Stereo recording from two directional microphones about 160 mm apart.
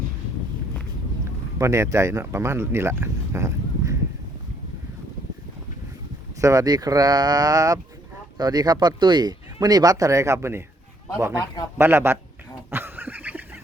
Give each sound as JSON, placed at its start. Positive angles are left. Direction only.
{"t": 1.5, "sound": "speech", "side_deg": -20}
{"t": 6.4, "sound": "speech", "side_deg": -20}
{"t": 11.8, "sound": "a man's voice", "side_deg": -15}
{"t": 12.7, "sound": "a sound", "side_deg": -10}